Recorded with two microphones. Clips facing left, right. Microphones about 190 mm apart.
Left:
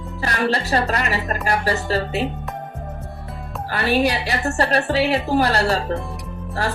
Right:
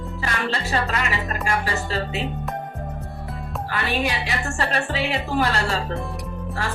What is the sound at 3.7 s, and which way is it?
A woman's voice, 40° left (ahead or behind).